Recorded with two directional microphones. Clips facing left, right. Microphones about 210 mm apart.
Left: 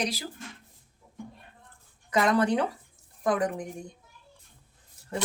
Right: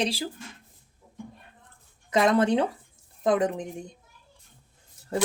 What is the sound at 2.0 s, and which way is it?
Speech, 20° right (ahead or behind).